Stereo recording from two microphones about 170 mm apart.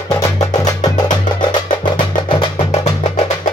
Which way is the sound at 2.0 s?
35° left (ahead or behind).